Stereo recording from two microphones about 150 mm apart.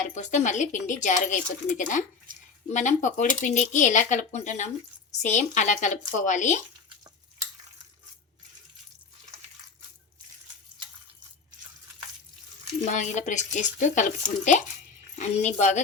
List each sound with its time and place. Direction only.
0.1 s speech: 55° left (ahead or behind)
2.3 s speech: 65° right (ahead or behind)
2.7 s speech: 55° left (ahead or behind)
12.8 s speech: 50° left (ahead or behind)